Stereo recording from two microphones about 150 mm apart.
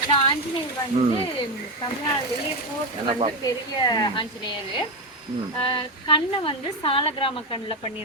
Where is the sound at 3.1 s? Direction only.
40° right (ahead or behind).